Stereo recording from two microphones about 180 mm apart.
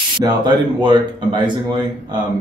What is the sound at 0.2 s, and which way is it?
Speech, 25° right (ahead or behind).